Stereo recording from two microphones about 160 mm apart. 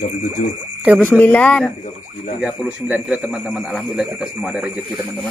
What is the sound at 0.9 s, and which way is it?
Speech, 10° left (ahead or behind).